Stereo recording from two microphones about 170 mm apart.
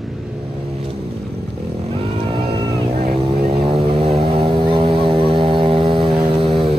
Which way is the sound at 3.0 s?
60° right (ahead or behind).